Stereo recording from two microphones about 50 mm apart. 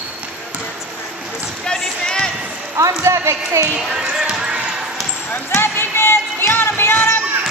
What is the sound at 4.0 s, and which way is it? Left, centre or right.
Basketball bounce, centre.